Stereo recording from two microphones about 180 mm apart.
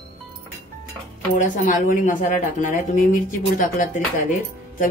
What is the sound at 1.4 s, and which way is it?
A woman's voice, 45° left (ahead or behind).